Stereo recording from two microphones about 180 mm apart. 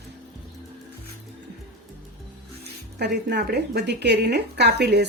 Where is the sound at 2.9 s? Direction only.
65° right (ahead or behind).